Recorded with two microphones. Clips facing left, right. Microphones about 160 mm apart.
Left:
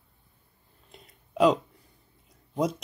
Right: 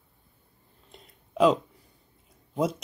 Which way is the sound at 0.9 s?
Centre (ahead or behind).